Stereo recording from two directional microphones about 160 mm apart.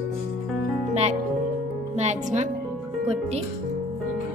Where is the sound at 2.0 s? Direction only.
45° right (ahead or behind).